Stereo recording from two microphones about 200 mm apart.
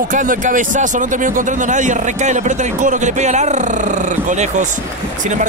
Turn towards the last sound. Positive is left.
turn(degrees=-35)  # may be behind; listen again after turning